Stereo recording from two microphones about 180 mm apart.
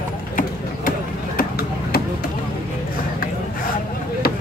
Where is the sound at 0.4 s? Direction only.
55° left (ahead or behind).